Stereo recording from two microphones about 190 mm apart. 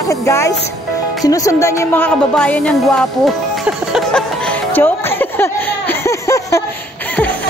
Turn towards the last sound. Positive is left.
turn(degrees=15)  # may be behind; listen again after turning